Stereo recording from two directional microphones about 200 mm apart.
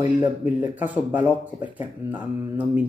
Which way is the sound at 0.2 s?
10° right (ahead or behind).